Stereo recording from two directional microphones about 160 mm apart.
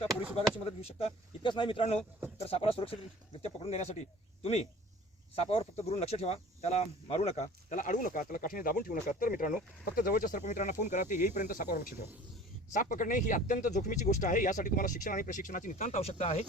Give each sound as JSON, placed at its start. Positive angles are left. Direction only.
{"t": 0.8, "sound": "speech", "side_deg": 40}
{"t": 5.3, "sound": "speech", "side_deg": 35}
{"t": 12.7, "sound": "speech", "side_deg": 55}